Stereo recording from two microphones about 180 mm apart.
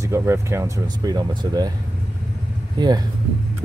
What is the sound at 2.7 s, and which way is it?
Speech, 25° right (ahead or behind).